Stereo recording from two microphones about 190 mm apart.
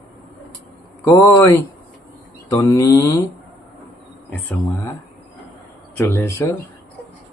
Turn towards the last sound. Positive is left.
turn(degrees=10)  # may be behind; listen again after turning